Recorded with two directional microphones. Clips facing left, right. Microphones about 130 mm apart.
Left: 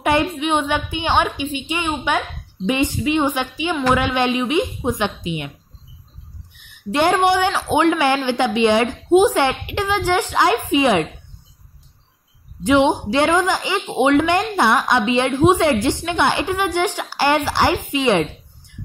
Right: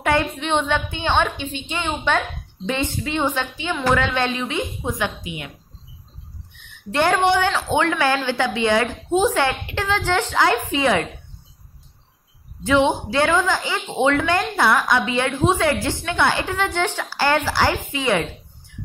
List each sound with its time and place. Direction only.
0.0 s a woman's voice: 15° left (ahead or behind)
6.5 s a woman's voice: 10° left (ahead or behind)
12.6 s a woman's voice: 15° left (ahead or behind)